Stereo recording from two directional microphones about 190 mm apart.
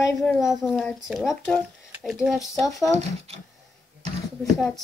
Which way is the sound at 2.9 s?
30° right (ahead or behind).